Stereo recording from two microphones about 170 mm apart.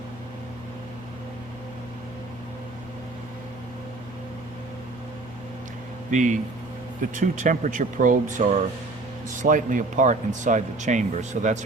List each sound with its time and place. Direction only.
6.1 s speech: 50° right (ahead or behind)